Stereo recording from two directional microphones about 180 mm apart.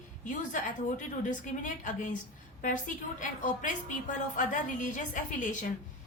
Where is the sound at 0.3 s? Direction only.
45° left (ahead or behind).